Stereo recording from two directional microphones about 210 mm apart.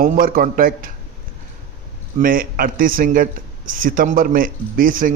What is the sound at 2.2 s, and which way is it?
A man's voice, 40° right (ahead or behind).